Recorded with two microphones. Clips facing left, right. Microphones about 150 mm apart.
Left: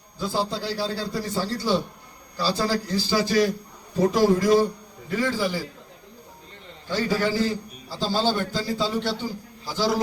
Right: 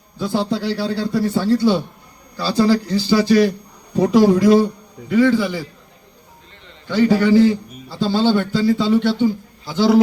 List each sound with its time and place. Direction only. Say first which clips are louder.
0.2 s a man's voice: right 6 dB; 60° right (ahead or behind)
6.9 s a man's voice: right 10 dB; 60° right (ahead or behind)